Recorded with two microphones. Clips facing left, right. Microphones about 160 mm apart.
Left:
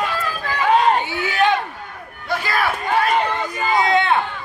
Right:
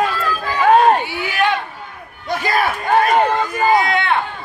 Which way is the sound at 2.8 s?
50° right (ahead or behind).